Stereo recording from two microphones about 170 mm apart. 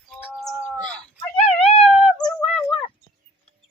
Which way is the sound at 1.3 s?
35° left (ahead or behind).